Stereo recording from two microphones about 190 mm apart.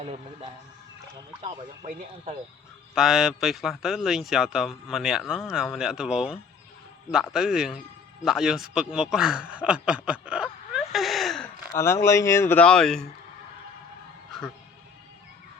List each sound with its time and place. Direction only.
0.0 s speech: 35° right (ahead or behind)
2.9 s a man's voice: centre (ahead or behind)
11.8 s speech: 15° left (ahead or behind)